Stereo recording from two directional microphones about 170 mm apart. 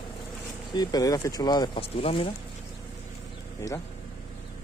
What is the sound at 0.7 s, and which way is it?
Speech, 20° left (ahead or behind).